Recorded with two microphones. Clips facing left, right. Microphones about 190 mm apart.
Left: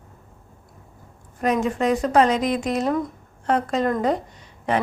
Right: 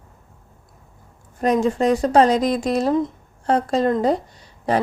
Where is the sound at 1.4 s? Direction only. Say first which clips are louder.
Right 3 dB; 35° right (ahead or behind).